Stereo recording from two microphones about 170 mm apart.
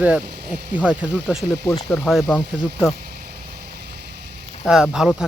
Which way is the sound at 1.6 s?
15° left (ahead or behind).